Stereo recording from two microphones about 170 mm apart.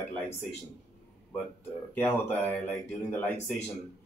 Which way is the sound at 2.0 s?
10° left (ahead or behind).